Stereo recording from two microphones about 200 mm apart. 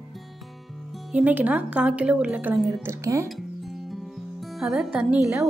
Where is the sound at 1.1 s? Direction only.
5° right (ahead or behind).